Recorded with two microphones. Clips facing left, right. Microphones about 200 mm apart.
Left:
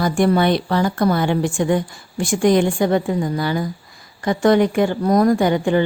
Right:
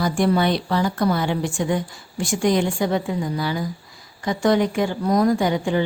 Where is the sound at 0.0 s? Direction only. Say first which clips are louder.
Left 3 dB; 55° left (ahead or behind).